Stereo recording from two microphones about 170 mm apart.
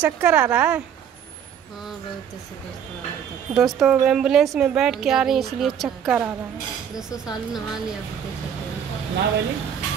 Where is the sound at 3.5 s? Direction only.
Centre (ahead or behind).